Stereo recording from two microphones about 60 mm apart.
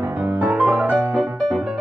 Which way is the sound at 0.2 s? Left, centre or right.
Right.